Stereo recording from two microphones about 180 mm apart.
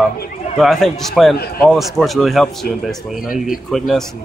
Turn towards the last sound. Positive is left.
turn(degrees=0)  # may be behind; listen again after turning